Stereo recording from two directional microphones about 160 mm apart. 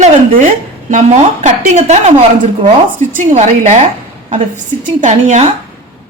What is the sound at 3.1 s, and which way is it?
A woman's voice, 50° right (ahead or behind).